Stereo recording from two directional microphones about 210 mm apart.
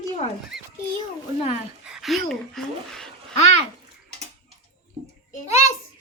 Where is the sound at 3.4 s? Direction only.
30° left (ahead or behind).